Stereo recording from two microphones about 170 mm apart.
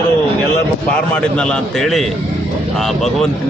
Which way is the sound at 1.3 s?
Centre (ahead or behind).